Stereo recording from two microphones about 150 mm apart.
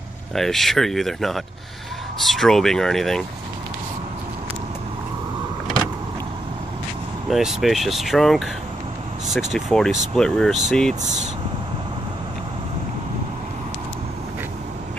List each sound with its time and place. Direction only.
0.3 s speech: centre (ahead or behind)
7.2 s speech: centre (ahead or behind)
11.0 s speech: 55° right (ahead or behind)